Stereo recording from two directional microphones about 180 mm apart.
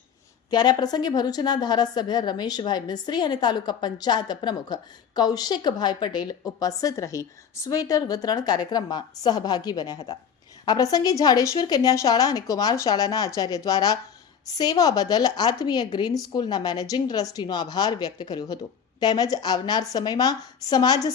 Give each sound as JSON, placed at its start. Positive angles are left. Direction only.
{"t": 0.5, "sound": "a woman's voice", "side_deg": 25}